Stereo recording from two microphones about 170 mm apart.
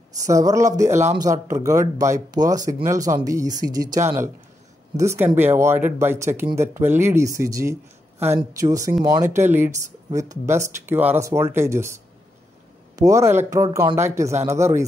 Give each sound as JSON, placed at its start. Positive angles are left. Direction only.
{"t": 0.2, "sound": "speech", "side_deg": -20}
{"t": 13.7, "sound": "speech", "side_deg": -30}
{"t": 13.9, "sound": "speech", "side_deg": -15}